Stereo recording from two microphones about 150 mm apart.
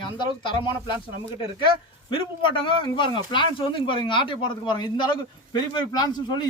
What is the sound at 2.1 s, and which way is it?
Speech, 35° left (ahead or behind).